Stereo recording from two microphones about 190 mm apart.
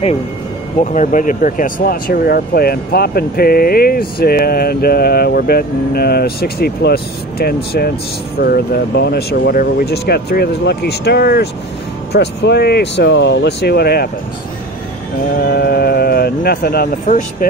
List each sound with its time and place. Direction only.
0.9 s speech: 45° left (ahead or behind)
15.5 s speech: 55° left (ahead or behind)